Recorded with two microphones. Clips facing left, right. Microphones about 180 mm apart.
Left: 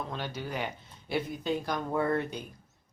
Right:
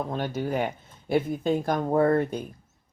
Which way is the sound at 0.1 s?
45° right (ahead or behind).